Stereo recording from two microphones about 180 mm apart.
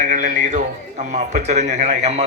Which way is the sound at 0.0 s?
45° right (ahead or behind).